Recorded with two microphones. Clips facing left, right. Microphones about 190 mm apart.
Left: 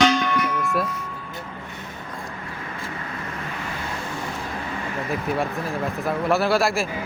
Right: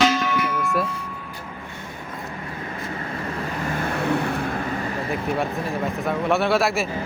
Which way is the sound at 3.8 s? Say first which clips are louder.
Right 11 dB; 65° right (ahead or behind).